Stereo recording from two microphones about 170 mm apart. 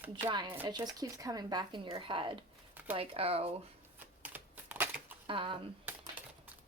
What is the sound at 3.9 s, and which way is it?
Typewriter, 10° right (ahead or behind).